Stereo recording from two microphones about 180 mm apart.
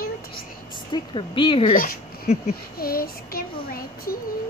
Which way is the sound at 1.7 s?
50° left (ahead or behind).